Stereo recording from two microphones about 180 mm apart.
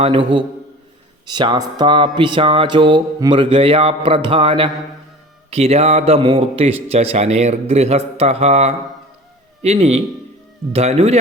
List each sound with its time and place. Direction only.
0.0 s a man's voice: 30° right (ahead or behind)